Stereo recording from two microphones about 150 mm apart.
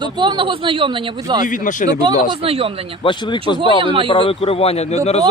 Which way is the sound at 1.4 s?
60° left (ahead or behind).